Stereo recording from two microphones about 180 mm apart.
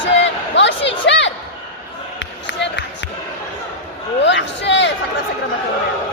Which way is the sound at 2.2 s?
75° left (ahead or behind).